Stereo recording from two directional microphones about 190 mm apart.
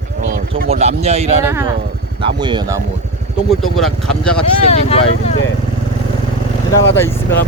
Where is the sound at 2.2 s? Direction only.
25° right (ahead or behind).